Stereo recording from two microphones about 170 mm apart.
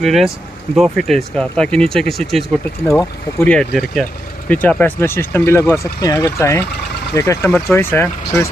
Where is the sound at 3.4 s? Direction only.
5° left (ahead or behind).